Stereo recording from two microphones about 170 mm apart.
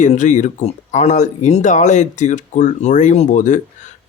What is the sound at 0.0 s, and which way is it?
Speech, 45° left (ahead or behind).